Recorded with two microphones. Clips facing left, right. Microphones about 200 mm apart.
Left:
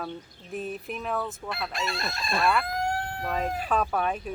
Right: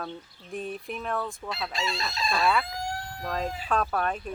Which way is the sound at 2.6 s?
55° left (ahead or behind).